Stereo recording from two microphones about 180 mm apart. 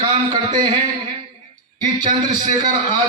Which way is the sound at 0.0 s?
20° right (ahead or behind).